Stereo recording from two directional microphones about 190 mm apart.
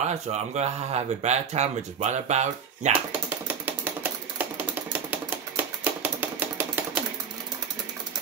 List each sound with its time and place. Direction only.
0.0 s speech: 35° right (ahead or behind)
3.1 s typewriter: 10° right (ahead or behind)
4.4 s a sound: 10° right (ahead or behind)
5.9 s typewriter: 10° right (ahead or behind)